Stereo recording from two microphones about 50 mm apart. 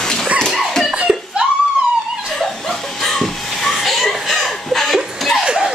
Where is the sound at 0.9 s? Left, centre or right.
Right.